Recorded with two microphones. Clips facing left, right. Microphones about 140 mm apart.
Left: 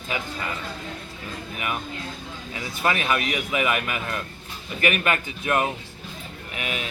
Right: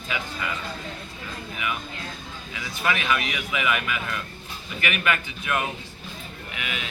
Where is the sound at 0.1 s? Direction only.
40° left (ahead or behind).